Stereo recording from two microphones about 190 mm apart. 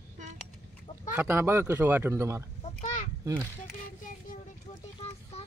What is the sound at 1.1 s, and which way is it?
Speech, 10° right (ahead or behind).